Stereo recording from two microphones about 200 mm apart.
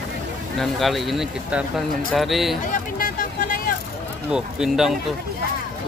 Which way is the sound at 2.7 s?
40° left (ahead or behind).